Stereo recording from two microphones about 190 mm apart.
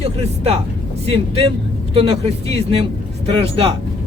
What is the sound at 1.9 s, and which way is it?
Speech, 30° right (ahead or behind).